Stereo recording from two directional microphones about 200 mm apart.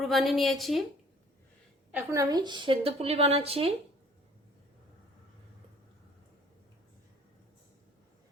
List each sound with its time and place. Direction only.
0.0 s a woman's voice: centre (ahead or behind)
1.9 s a woman's voice: 10° right (ahead or behind); by 3.7 s 30° right (ahead or behind)